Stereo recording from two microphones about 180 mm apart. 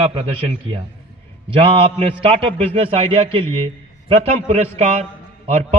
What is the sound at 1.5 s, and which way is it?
A man's voice, 30° right (ahead or behind).